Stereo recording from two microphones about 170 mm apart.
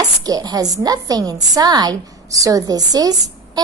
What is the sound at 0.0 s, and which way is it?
A woman's voice, 20° right (ahead or behind).